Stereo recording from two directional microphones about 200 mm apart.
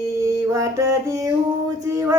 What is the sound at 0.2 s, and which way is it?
Mantra, 15° right (ahead or behind).